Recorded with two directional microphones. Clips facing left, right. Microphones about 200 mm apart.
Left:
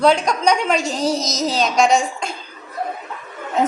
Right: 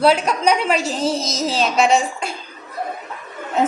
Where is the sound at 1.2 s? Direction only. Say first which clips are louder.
Left 1 dB; 30° right (ahead or behind).